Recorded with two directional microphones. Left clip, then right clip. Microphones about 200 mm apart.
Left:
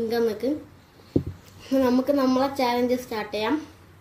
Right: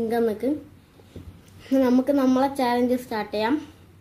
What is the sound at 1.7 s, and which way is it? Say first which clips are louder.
A woman's voice: right 1 dB; 10° right (ahead or behind).